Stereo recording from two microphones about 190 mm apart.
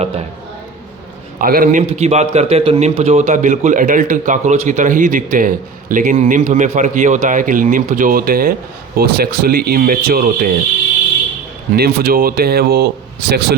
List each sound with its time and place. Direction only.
1.4 s speech: 50° right (ahead or behind)
1.9 s a man's voice: 35° right (ahead or behind); by 10.5 s 50° right (ahead or behind)
11.8 s speech: 50° right (ahead or behind)